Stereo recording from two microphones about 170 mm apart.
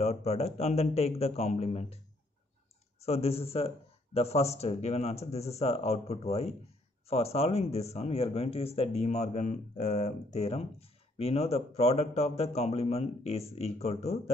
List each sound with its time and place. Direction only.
0.0 s speech: 40° left (ahead or behind)
3.0 s speech: 35° left (ahead or behind)